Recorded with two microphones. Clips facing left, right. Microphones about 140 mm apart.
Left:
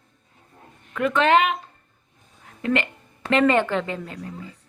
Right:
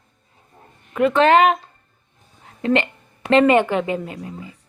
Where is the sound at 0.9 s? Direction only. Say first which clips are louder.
Right 4 dB; 30° right (ahead or behind).